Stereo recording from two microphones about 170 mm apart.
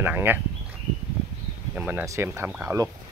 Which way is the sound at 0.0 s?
10° right (ahead or behind).